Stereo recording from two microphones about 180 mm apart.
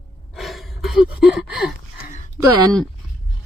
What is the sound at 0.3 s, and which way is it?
Gasp, centre (ahead or behind).